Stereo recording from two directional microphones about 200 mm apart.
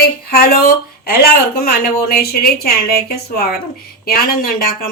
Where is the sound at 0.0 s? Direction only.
50° left (ahead or behind).